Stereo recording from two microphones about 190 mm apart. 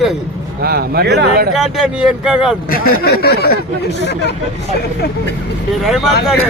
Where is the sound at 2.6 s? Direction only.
50° left (ahead or behind).